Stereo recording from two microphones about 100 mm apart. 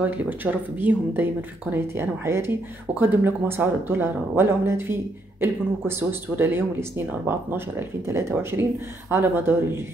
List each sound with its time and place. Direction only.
0.0 s speech: 15° right (ahead or behind)